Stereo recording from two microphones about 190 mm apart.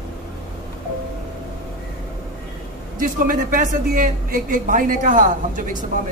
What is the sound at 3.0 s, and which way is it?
A man's voice, 45° right (ahead or behind).